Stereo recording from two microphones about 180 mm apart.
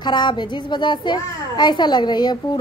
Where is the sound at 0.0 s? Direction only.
25° left (ahead or behind).